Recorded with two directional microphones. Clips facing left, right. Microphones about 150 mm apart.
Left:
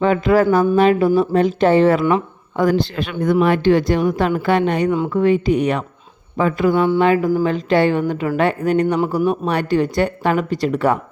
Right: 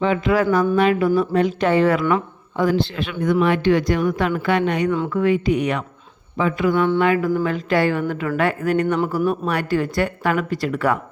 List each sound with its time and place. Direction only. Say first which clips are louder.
0.0 s a woman's voice: left 4 dB; 45° left (ahead or behind); by 2.2 s 30° left (ahead or behind)
2.6 s a woman's voice: left 2 dB; 45° left (ahead or behind); by 10.9 s 25° left (ahead or behind)